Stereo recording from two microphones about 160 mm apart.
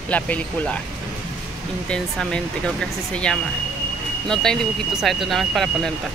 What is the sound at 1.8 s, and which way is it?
Speech, 5° left (ahead or behind).